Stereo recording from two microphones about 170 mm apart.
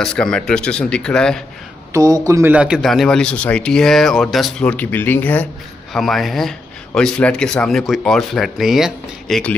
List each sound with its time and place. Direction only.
0.0 s speech: 5° left (ahead or behind)
2.0 s a man's voice: 20° right (ahead or behind)
2.5 s speech: 5° right (ahead or behind)